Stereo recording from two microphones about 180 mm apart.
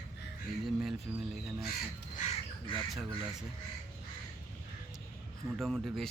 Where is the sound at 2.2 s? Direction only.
40° left (ahead or behind).